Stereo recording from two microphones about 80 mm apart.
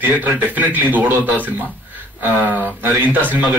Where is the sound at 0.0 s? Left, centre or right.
Right.